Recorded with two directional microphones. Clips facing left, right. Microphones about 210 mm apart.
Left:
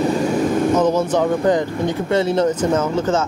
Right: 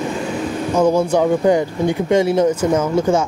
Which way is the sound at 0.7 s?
10° right (ahead or behind).